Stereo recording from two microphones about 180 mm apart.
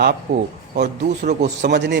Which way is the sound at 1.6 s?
70° right (ahead or behind).